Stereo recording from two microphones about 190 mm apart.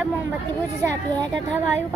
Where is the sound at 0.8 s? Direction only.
15° right (ahead or behind).